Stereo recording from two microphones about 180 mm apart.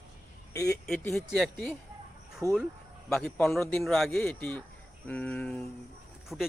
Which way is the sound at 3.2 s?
5° left (ahead or behind).